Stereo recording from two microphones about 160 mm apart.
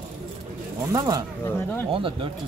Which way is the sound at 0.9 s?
20° right (ahead or behind).